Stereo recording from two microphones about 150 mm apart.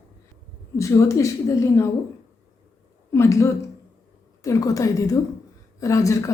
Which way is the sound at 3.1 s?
20° left (ahead or behind).